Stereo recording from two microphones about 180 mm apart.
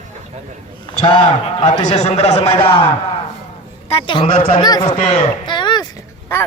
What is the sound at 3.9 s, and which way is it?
Speech, 30° left (ahead or behind).